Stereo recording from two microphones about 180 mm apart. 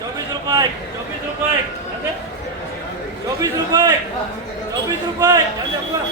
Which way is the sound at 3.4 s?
20° right (ahead or behind).